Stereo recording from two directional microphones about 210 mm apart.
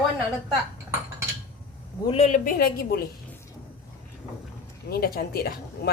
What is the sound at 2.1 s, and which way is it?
Speech, 30° left (ahead or behind).